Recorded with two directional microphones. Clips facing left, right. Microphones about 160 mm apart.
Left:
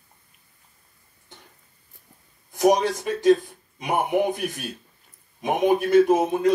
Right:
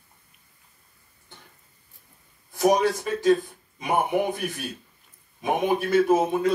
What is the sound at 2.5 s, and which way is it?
Speech, 20° left (ahead or behind).